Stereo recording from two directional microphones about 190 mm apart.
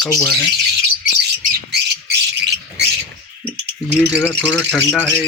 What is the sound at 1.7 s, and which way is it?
Squawk, 60° right (ahead or behind).